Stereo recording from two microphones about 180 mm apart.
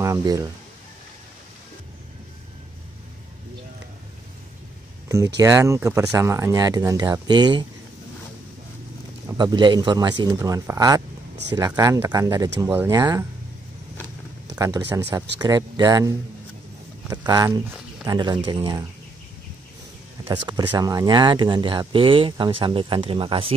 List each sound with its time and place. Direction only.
0.0 s speech: 20° right (ahead or behind)
5.0 s a sound: 15° right (ahead or behind)
5.4 s speech: 15° right (ahead or behind)
9.4 s speech: 25° right (ahead or behind)
14.5 s speech: 20° right (ahead or behind)
17.3 s speech: 15° right (ahead or behind)
20.2 s speech: 20° right (ahead or behind)